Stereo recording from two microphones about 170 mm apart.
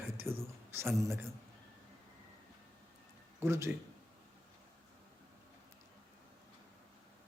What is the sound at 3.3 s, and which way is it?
Speech, 15° right (ahead or behind).